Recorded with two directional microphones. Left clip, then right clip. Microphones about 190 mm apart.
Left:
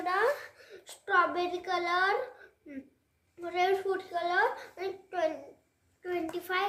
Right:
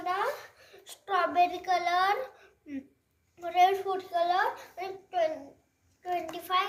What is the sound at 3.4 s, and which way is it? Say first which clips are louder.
A child's voice: right 4 dB; 25° left (ahead or behind).